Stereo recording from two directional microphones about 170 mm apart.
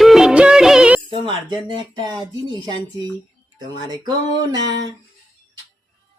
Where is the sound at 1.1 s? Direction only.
30° right (ahead or behind).